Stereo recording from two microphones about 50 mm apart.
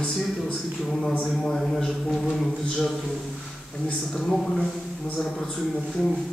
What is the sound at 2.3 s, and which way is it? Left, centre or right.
Speech, centre.